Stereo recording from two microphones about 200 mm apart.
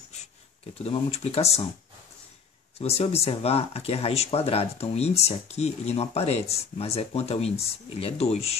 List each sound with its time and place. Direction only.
0.7 s speech: 30° left (ahead or behind)
2.8 s speech: 30° left (ahead or behind)